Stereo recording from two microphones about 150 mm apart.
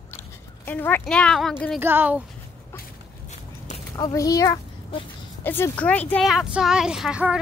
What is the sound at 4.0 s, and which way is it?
A child's voice, 25° left (ahead or behind).